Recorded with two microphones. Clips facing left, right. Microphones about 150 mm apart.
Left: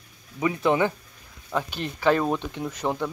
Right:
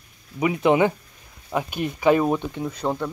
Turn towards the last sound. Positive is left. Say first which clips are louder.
# right 2 dB
turn(degrees=-5)  # may be behind; listen again after turning